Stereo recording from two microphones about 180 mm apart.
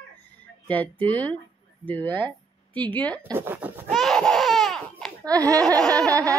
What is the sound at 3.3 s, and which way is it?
Speech, 10° right (ahead or behind).